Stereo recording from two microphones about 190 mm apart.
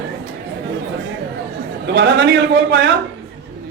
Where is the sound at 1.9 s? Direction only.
65° right (ahead or behind).